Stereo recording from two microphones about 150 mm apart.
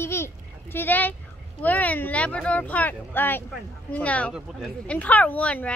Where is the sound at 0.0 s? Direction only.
15° left (ahead or behind).